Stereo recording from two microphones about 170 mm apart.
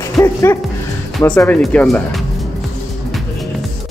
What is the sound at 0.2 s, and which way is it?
Speech, 15° left (ahead or behind).